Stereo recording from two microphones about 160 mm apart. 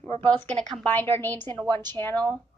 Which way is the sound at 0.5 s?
5° left (ahead or behind).